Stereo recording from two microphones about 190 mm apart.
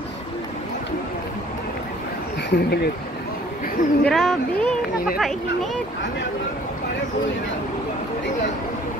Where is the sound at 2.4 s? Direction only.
60° left (ahead or behind).